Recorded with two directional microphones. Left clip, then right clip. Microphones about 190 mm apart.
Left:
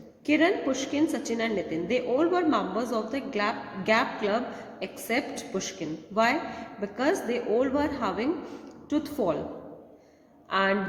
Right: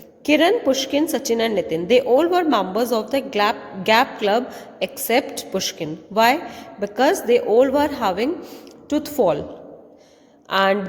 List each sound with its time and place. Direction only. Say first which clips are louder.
0.3 s a woman's voice: right 8 dB; 50° right (ahead or behind)
10.5 s a woman's voice: right 7 dB; 45° right (ahead or behind)